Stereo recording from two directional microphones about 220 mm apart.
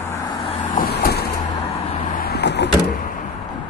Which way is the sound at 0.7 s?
45° left (ahead or behind).